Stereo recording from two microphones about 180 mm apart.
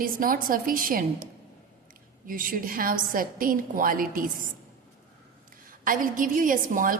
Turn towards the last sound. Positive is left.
turn(degrees=-50)  # may be behind; listen again after turning